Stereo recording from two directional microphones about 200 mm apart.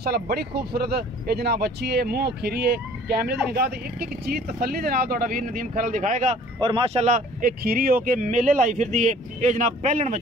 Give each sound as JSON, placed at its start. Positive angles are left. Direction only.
{"t": 0.0, "sound": "speech", "side_deg": -50}
{"t": 6.6, "sound": "speech", "side_deg": -25}